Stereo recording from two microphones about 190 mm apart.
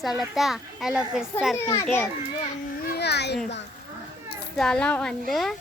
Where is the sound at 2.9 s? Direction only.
60° left (ahead or behind).